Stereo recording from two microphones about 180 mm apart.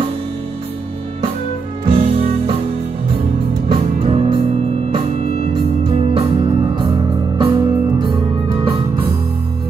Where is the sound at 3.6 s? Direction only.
35° right (ahead or behind).